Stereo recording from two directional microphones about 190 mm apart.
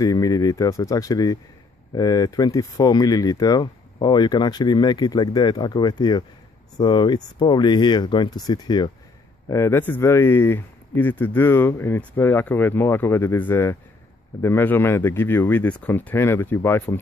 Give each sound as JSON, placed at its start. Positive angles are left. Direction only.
{"t": 0.0, "sound": "speech", "side_deg": 20}